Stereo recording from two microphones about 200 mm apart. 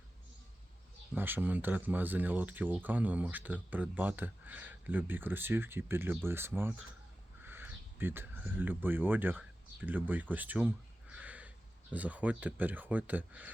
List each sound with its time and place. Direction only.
1.1 s speech: 10° right (ahead or behind)